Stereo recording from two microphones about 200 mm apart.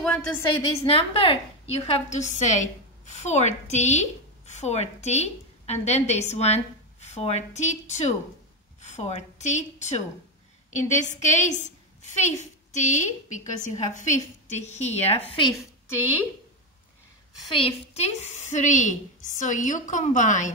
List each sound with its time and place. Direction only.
0.0 s a woman's voice: 5° left (ahead or behind)
0.8 s a woman's voice: 25° left (ahead or behind)
17.5 s a woman's voice: 30° left (ahead or behind)